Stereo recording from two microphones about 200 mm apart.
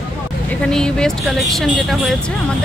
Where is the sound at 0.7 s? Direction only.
5° left (ahead or behind).